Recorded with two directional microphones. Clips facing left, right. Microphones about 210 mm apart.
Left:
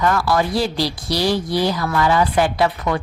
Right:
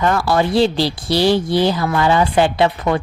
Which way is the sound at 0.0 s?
25° right (ahead or behind).